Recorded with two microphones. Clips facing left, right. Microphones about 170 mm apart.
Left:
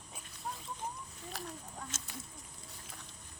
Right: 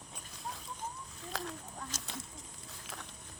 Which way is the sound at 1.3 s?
90° right.